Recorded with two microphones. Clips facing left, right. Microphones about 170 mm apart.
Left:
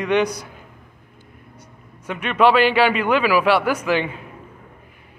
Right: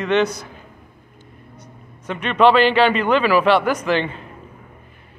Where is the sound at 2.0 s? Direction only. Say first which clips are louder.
Right 2 dB; 10° left (ahead or behind).